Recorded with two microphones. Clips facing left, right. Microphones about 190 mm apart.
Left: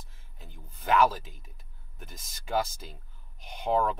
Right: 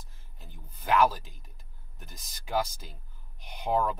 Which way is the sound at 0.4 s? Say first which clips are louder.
Left 1 dB; centre (ahead or behind).